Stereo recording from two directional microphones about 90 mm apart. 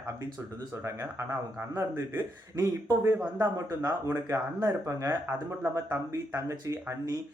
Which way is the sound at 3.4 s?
40° right (ahead or behind).